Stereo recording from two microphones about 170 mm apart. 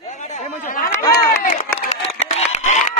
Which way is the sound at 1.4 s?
45° left (ahead or behind).